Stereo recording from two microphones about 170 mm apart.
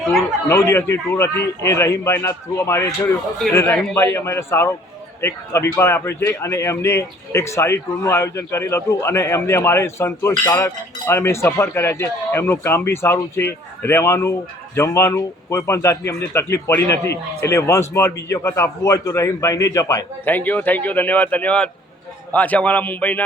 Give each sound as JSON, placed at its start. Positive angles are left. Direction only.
{"t": 0.4, "sound": "speech", "side_deg": 15}